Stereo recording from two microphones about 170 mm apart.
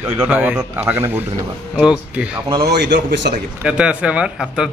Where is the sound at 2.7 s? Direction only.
90° right.